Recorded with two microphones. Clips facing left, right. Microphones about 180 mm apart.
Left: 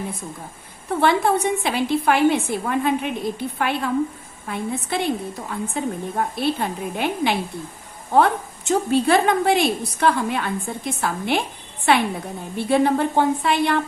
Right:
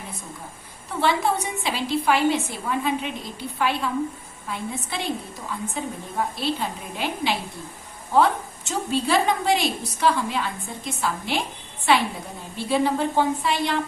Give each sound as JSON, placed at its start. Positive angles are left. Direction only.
{"t": 0.9, "sound": "a woman's voice", "side_deg": 55}